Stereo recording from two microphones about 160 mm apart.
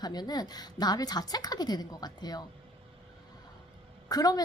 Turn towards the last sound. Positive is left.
turn(degrees=25)  # may be behind; listen again after turning